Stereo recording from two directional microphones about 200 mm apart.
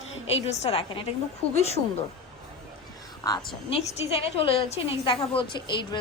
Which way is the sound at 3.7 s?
30° left (ahead or behind).